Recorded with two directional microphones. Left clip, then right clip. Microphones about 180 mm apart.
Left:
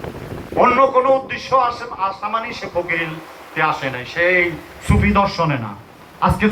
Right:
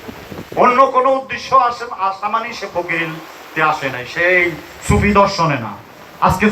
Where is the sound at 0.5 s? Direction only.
35° left (ahead or behind).